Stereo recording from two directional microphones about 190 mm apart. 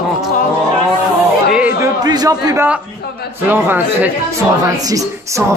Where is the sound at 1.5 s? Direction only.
10° right (ahead or behind).